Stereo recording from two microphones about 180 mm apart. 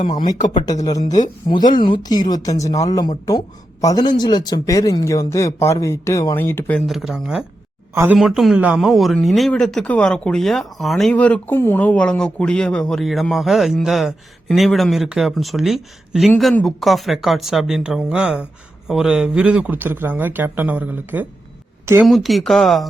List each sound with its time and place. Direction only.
0.1 s speech: 20° left (ahead or behind); by 8.2 s 10° right (ahead or behind)
8.2 s speech: centre (ahead or behind)
22.0 s speech: centre (ahead or behind)